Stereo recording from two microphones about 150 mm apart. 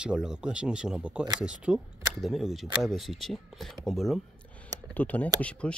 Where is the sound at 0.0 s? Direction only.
5° right (ahead or behind).